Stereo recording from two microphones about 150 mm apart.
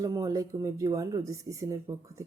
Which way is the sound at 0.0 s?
25° right (ahead or behind).